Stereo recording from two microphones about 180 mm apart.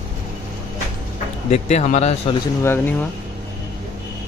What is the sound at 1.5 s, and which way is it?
Speech, 40° left (ahead or behind).